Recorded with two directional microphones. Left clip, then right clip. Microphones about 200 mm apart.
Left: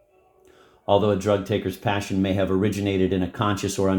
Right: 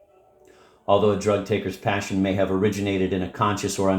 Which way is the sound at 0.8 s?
35° left (ahead or behind).